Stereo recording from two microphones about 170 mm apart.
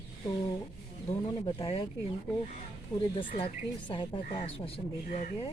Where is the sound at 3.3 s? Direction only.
30° left (ahead or behind).